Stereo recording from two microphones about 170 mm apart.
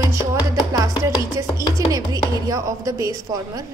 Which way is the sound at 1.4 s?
20° right (ahead or behind).